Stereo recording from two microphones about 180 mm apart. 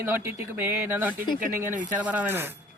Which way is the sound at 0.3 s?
10° right (ahead or behind).